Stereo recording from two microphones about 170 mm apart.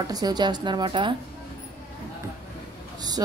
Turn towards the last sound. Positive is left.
turn(degrees=-20)  # may be behind; listen again after turning